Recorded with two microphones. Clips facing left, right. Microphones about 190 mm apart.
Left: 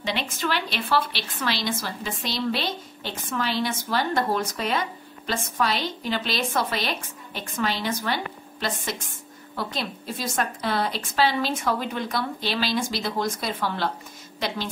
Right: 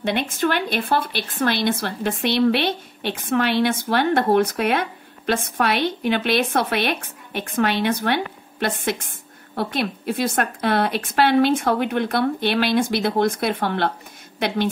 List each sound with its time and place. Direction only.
0.0 s a woman's voice: 55° right (ahead or behind)